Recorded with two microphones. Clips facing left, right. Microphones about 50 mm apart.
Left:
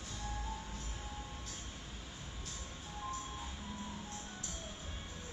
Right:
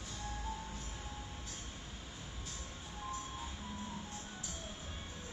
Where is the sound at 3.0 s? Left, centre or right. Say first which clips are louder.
Even; centre.